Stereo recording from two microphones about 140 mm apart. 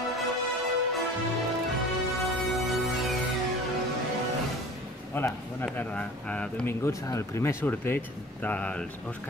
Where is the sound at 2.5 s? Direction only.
Centre (ahead or behind).